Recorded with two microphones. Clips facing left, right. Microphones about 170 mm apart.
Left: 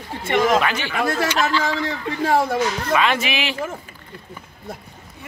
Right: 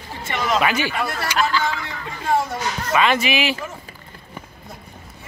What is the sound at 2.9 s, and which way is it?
Speech, centre (ahead or behind).